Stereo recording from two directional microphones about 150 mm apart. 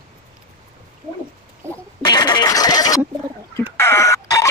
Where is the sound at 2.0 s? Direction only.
30° left (ahead or behind).